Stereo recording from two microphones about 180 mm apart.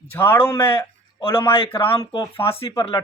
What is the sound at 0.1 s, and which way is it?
Speech, 10° left (ahead or behind).